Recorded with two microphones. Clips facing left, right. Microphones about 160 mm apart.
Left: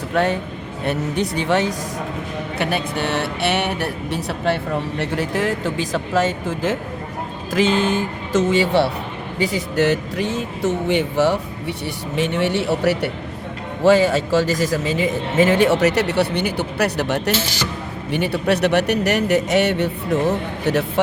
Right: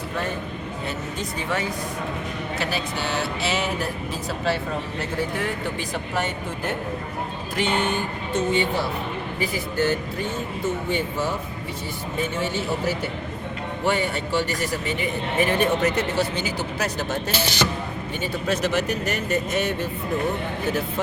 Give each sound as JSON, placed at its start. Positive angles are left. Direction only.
{"t": 0.1, "sound": "a man's voice", "side_deg": 85}
{"t": 0.9, "sound": "speech", "side_deg": 70}
{"t": 2.6, "sound": "a man's voice", "side_deg": 60}
{"t": 13.8, "sound": "a man's voice", "side_deg": 90}
{"t": 17.3, "sound": "speech", "side_deg": -20}
{"t": 18.1, "sound": "speech", "side_deg": 70}